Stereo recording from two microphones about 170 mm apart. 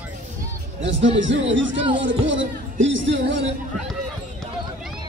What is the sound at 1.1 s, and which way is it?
Speech, 90° right.